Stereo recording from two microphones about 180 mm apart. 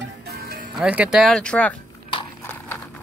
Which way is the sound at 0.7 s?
5° right (ahead or behind).